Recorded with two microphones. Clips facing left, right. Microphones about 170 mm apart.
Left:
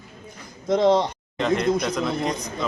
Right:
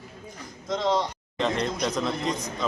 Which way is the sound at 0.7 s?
60° left (ahead or behind).